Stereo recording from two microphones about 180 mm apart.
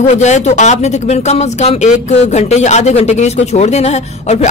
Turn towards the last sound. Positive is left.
turn(degrees=35)  # may be behind; listen again after turning